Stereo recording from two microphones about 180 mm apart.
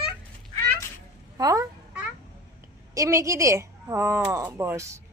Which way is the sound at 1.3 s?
20° right (ahead or behind).